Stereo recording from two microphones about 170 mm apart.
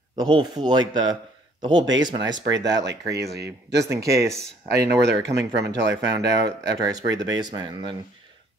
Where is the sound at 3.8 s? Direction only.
20° right (ahead or behind).